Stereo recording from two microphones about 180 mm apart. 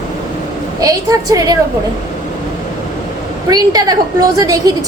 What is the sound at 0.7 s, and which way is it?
Speech, 20° right (ahead or behind).